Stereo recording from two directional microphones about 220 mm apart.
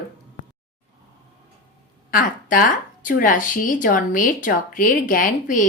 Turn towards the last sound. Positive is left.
turn(degrees=35)  # may be behind; listen again after turning